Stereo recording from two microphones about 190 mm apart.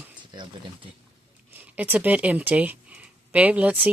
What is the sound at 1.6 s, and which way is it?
Speech, 10° right (ahead or behind).